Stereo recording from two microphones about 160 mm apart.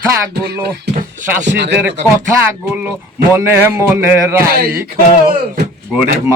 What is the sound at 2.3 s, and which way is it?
Speech, 15° right (ahead or behind).